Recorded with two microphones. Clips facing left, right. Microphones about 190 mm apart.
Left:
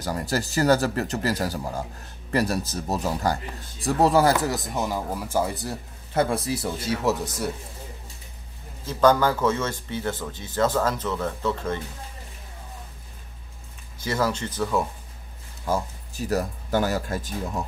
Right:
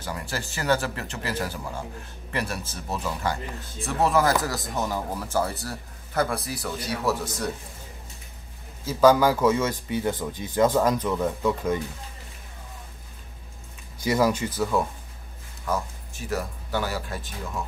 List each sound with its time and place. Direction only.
0.0 s speech: 40° left (ahead or behind)
4.7 s speech: 10° left (ahead or behind)
8.8 s speech: 5° right (ahead or behind)
13.9 s speech: 10° right (ahead or behind)
15.6 s speech: 35° left (ahead or behind)